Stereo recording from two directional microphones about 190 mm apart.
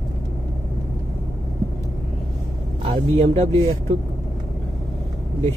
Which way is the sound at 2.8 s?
30° right (ahead or behind).